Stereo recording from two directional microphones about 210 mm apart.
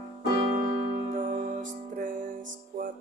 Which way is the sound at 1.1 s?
40° right (ahead or behind).